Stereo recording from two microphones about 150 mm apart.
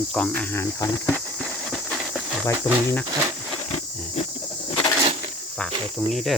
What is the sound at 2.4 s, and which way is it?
Speech, 20° left (ahead or behind).